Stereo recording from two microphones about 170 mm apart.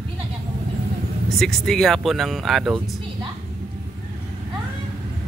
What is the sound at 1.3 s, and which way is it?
Speech, centre (ahead or behind).